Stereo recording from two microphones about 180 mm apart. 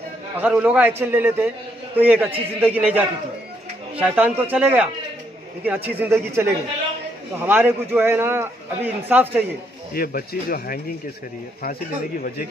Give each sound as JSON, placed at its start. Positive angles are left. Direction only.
{"t": 0.4, "sound": "a man's voice", "side_deg": -5}
{"t": 9.9, "sound": "speech", "side_deg": 55}